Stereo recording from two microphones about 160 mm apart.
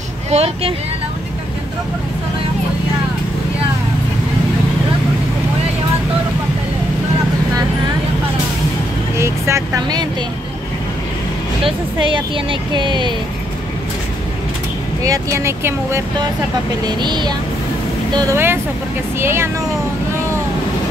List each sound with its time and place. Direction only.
0.3 s speech: 40° right (ahead or behind)
9.1 s speech: 15° right (ahead or behind)
11.6 s speech: 30° right (ahead or behind)
15.0 s speech: 20° right (ahead or behind)
16.8 s speech: 30° right (ahead or behind)